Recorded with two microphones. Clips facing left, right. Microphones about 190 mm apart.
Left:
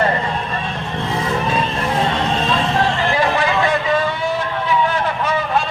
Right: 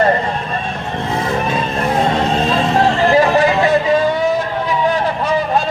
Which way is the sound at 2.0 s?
40° right (ahead or behind).